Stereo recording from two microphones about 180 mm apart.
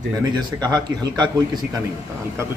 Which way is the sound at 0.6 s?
25° right (ahead or behind).